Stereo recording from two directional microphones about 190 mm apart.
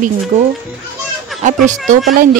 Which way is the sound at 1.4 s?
40° right (ahead or behind).